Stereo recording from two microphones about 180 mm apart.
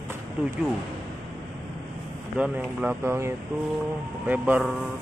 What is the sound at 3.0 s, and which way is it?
Speech, 15° right (ahead or behind).